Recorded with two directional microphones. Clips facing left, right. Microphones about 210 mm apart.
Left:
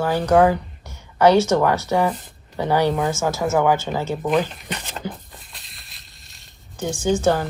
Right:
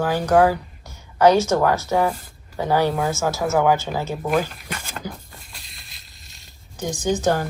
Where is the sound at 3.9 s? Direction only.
10° right (ahead or behind).